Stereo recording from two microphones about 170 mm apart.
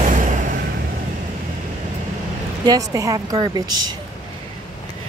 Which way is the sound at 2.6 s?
20° right (ahead or behind).